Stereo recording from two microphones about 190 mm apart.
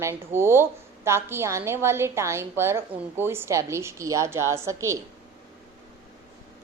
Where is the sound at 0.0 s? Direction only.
15° right (ahead or behind).